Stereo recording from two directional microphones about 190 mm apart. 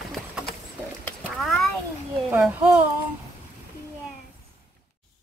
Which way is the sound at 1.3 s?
Centre (ahead or behind).